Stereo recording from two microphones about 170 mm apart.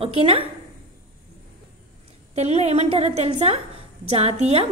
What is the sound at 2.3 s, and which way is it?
A woman's voice, 40° right (ahead or behind).